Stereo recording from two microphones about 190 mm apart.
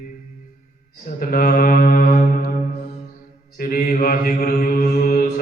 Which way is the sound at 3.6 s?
45° left (ahead or behind).